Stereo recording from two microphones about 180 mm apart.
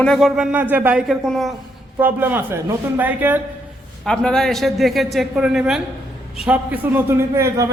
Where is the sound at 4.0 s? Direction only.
5° left (ahead or behind).